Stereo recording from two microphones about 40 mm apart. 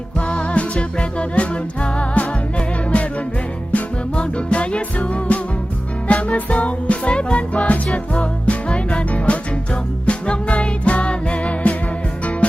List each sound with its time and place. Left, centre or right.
0.2 s music: left